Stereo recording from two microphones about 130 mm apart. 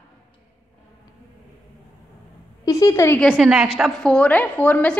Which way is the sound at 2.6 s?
25° left (ahead or behind).